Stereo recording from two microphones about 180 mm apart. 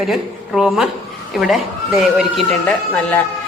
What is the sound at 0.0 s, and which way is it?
Speech, centre (ahead or behind).